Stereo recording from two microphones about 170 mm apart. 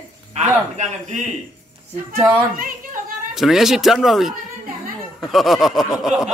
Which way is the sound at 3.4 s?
Centre (ahead or behind).